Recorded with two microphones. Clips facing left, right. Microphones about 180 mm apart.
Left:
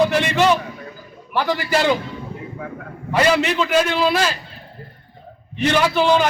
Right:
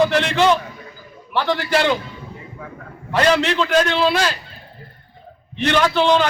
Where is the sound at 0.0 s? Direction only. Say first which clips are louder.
Even; 5° left (ahead or behind).